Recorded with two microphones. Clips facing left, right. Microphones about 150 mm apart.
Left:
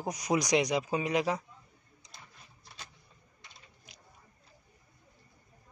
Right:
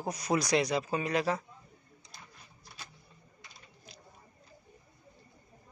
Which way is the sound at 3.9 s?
15° left (ahead or behind).